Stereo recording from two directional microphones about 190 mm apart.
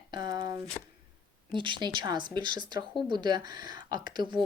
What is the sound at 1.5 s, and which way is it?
Speech, 25° right (ahead or behind).